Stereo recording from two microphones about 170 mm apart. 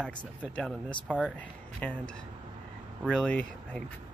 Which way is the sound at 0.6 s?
5° left (ahead or behind).